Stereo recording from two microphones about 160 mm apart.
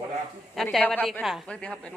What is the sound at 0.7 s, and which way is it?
A woman's voice, 5° left (ahead or behind).